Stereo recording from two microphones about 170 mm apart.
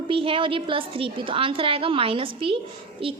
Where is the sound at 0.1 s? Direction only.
30° right (ahead or behind).